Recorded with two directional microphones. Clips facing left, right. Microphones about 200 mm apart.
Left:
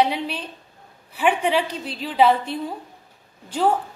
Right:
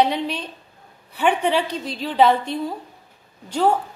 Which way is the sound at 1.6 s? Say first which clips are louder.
Right 3 dB; 40° right (ahead or behind).